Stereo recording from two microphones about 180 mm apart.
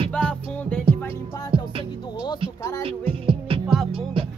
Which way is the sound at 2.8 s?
30° right (ahead or behind).